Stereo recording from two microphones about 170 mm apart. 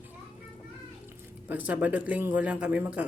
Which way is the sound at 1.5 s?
10° right (ahead or behind).